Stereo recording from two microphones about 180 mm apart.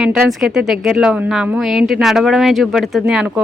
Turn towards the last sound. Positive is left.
turn(degrees=-5)  # may be behind; listen again after turning